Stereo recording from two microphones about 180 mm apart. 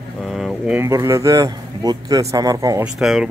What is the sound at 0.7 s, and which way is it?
Speech, 15° right (ahead or behind).